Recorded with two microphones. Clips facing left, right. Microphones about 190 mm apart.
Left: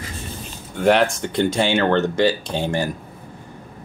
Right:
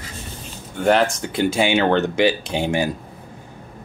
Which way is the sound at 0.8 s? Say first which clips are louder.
Left 1 dB; centre (ahead or behind).